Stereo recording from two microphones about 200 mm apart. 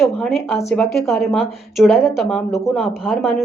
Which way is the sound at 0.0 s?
Centre (ahead or behind).